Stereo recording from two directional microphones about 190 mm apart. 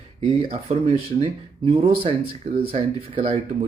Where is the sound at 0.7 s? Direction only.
35° right (ahead or behind).